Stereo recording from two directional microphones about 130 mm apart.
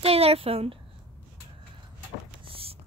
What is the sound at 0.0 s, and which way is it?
Speech, 50° right (ahead or behind).